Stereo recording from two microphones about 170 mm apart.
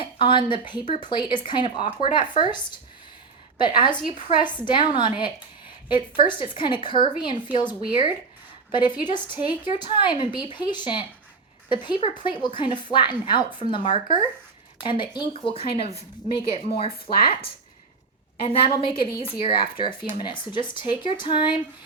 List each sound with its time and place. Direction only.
0.0 s a woman's voice: 30° left (ahead or behind)